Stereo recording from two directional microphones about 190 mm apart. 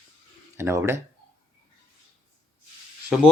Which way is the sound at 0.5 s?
15° right (ahead or behind).